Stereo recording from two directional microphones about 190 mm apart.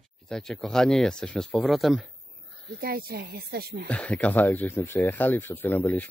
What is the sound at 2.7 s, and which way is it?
Speech, 50° right (ahead or behind).